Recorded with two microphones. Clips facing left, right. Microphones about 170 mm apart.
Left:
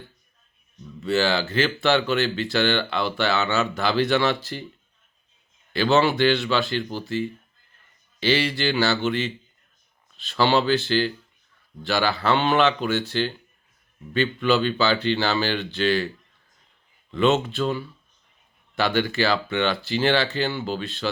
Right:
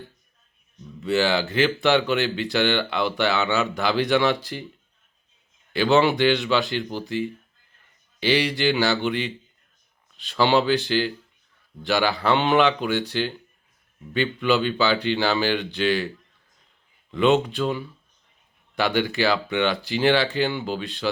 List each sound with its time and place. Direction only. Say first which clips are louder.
1.0 s speech: right 1 dB; 15° right (ahead or behind)
5.7 s speech: right 1 dB; 15° right (ahead or behind)